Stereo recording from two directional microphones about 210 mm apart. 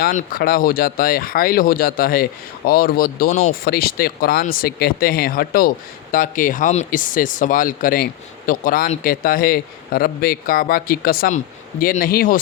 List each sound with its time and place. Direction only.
0.0 s speech: 40° left (ahead or behind)